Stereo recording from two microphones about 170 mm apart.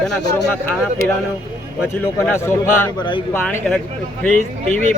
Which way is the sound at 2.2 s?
10° left (ahead or behind).